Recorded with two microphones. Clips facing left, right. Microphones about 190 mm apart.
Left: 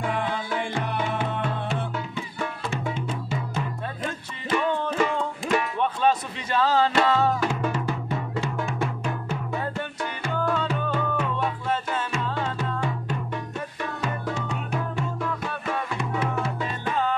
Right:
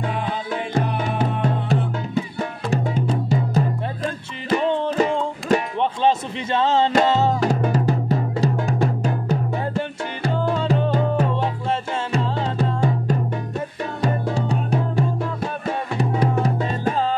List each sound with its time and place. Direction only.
0.7 s music: 40° right (ahead or behind)
4.6 s music: 25° right (ahead or behind)
5.8 s a sound: 25° right (ahead or behind)
7.1 s music: 25° right (ahead or behind)
7.4 s music: 40° right (ahead or behind)